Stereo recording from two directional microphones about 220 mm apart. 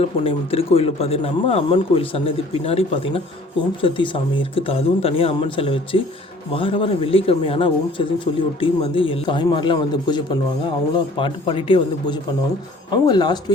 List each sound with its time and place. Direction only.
0.0 s speech: 25° left (ahead or behind)